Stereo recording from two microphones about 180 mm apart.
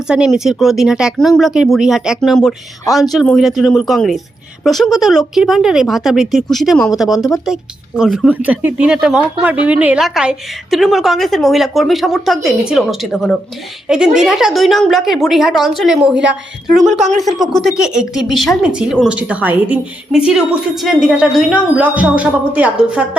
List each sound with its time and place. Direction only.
0.1 s a woman's voice: 5° right (ahead or behind)
17.0 s speech: 40° right (ahead or behind)
17.2 s a woman's voice: centre (ahead or behind)